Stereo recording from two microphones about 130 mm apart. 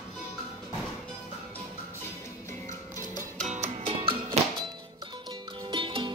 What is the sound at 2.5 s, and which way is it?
Music, 25° left (ahead or behind).